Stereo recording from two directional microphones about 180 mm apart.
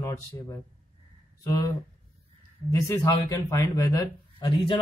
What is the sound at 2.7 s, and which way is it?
Speech, 20° left (ahead or behind).